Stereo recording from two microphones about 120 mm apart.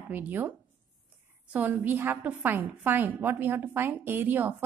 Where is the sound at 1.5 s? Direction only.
15° right (ahead or behind).